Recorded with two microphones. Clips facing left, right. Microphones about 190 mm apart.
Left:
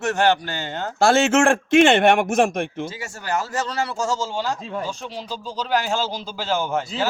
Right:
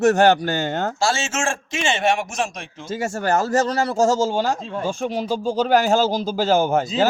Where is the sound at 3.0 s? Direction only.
45° right (ahead or behind).